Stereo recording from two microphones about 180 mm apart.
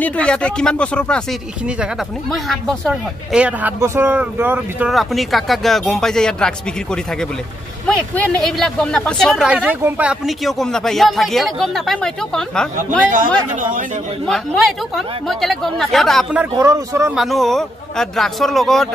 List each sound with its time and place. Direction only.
0.0 s speech: 5° left (ahead or behind)
2.3 s speech: centre (ahead or behind)
13.1 s a man's voice: 45° right (ahead or behind)
14.2 s speech: centre (ahead or behind)
16.5 s a man's voice: 15° right (ahead or behind)
17.1 s speech: centre (ahead or behind)